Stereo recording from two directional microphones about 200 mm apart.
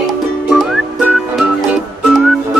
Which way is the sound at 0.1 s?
Centre (ahead or behind).